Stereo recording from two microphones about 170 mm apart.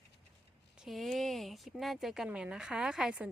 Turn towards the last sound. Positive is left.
turn(degrees=-5)  # may be behind; listen again after turning